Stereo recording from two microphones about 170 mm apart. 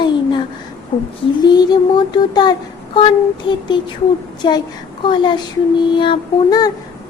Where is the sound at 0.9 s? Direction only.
40° left (ahead or behind).